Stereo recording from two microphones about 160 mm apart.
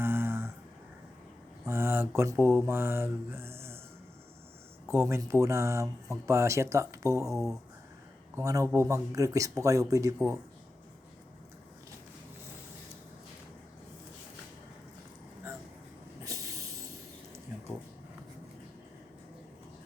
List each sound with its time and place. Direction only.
0.0 s a sound: 15° right (ahead or behind)
1.6 s speech: 15° right (ahead or behind)
4.9 s speech: 15° right (ahead or behind)
16.2 s vehicle: 20° right (ahead or behind)